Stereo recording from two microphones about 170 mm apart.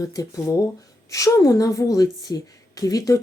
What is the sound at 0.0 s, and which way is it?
Speech, 20° left (ahead or behind).